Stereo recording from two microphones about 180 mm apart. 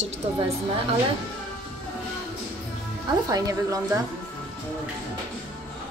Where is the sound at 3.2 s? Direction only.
20° right (ahead or behind).